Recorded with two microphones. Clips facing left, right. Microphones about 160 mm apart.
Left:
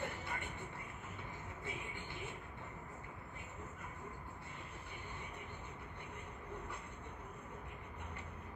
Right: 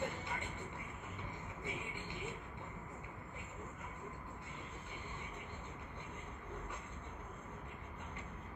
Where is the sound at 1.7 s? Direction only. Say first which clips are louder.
Right 2 dB; 15° right (ahead or behind).